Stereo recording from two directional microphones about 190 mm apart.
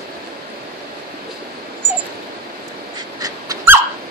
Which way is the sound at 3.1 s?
20° right (ahead or behind).